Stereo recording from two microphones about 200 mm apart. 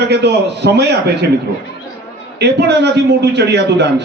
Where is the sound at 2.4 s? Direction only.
55° right (ahead or behind).